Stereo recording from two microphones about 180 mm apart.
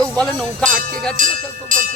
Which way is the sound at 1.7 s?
50° right (ahead or behind).